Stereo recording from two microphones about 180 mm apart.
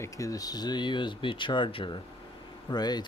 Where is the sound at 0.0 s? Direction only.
20° left (ahead or behind).